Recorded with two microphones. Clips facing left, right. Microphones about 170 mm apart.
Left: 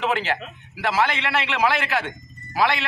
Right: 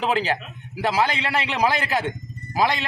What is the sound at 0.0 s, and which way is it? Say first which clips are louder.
A man's voice: right 1 dB; 35° right (ahead or behind).